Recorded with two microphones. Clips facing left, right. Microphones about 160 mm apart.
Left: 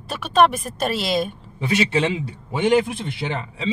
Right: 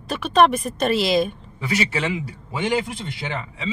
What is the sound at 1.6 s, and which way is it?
Speech, 25° left (ahead or behind).